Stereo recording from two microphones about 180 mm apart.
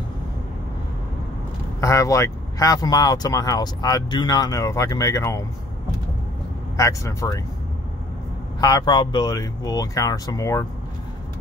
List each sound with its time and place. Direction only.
1.8 s speech: 15° left (ahead or behind)
6.8 s speech: 15° left (ahead or behind)
8.5 s speech: 20° left (ahead or behind)